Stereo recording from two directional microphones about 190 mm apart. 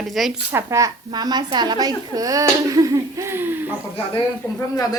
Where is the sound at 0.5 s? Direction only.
15° right (ahead or behind).